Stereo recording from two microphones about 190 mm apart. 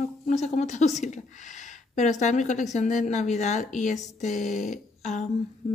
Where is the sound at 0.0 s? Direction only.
35° left (ahead or behind).